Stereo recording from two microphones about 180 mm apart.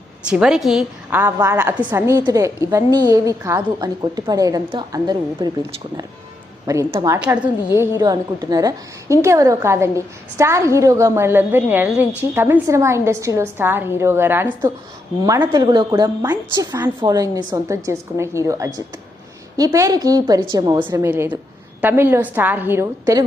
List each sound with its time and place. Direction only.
0.3 s a woman's voice: 5° right (ahead or behind)
1.2 s a woman's voice: 15° right (ahead or behind)
6.7 s a woman's voice: 15° right (ahead or behind)
15.2 s a woman's voice: 20° right (ahead or behind)